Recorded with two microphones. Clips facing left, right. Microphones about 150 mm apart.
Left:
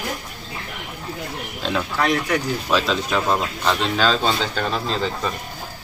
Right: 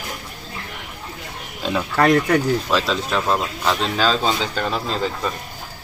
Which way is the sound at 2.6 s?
Centre (ahead or behind).